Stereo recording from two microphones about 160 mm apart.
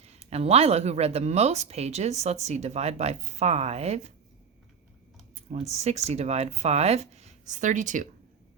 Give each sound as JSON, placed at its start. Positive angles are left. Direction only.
{"t": 0.0, "sound": "speech", "side_deg": -40}
{"t": 5.3, "sound": "speech", "side_deg": -40}